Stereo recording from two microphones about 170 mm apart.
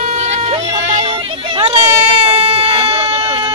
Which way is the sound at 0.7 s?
30° right (ahead or behind).